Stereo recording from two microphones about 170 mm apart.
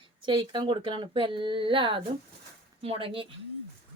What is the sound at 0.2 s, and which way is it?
A woman's voice, 30° right (ahead or behind).